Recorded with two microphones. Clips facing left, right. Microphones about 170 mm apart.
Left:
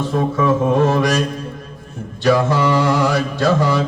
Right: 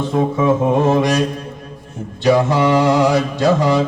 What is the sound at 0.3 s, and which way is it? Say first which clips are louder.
Mantra: left 1 dB; 20° right (ahead or behind).